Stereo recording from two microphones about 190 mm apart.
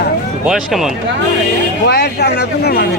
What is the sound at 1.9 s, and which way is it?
Speech, 60° left (ahead or behind).